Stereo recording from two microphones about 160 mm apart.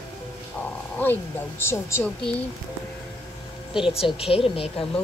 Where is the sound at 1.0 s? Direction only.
15° left (ahead or behind).